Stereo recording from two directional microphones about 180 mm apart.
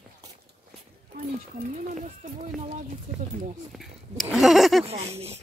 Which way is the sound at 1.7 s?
45° right (ahead or behind).